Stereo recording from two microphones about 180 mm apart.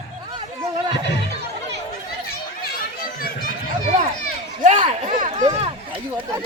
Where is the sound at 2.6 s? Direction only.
55° left (ahead or behind).